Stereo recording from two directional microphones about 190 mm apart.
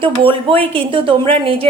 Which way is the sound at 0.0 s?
25° right (ahead or behind).